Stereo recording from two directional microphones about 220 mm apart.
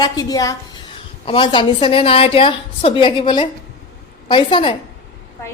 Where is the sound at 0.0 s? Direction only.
15° left (ahead or behind).